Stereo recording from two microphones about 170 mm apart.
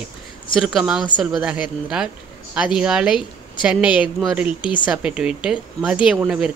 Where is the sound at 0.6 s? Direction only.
Centre (ahead or behind).